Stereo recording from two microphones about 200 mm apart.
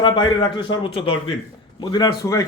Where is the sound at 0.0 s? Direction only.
25° left (ahead or behind).